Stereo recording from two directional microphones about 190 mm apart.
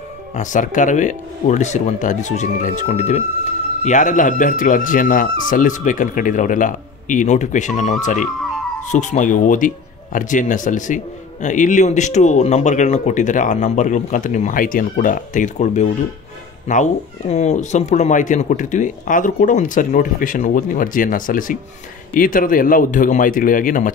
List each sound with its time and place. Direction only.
0.4 s speech: 40° left (ahead or behind)